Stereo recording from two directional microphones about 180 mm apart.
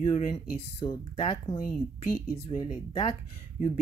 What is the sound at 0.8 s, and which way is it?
Speech, 25° left (ahead or behind).